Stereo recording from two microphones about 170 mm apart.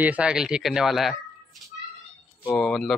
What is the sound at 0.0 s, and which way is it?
Speech, 5° right (ahead or behind).